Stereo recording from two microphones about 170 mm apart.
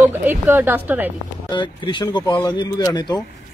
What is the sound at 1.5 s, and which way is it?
Speech, 30° left (ahead or behind).